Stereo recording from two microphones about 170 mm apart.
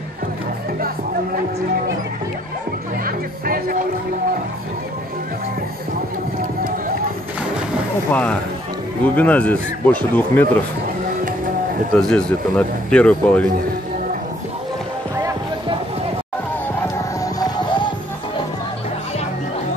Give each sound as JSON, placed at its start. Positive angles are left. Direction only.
{"t": 3.1, "sound": "speech", "side_deg": -60}
{"t": 8.1, "sound": "a man's voice", "side_deg": 10}
{"t": 11.9, "sound": "speech", "side_deg": 5}
{"t": 16.8, "sound": "music", "side_deg": 20}